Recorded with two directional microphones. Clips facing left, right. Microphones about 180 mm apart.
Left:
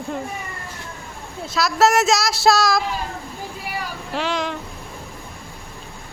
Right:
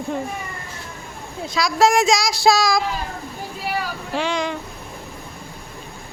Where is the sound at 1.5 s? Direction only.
5° left (ahead or behind).